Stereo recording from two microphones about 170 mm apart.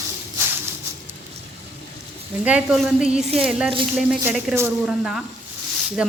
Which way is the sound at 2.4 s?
5° right (ahead or behind).